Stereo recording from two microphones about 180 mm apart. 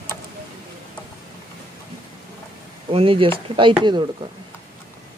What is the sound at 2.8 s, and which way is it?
Speech, 30° right (ahead or behind).